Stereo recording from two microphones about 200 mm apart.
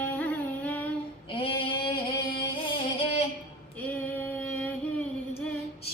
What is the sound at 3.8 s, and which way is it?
Female singing, 10° left (ahead or behind).